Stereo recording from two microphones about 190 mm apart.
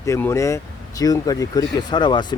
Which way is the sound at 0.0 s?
15° left (ahead or behind).